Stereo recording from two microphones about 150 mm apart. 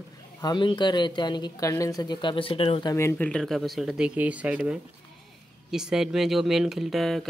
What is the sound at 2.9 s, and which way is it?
Speech, 20° left (ahead or behind).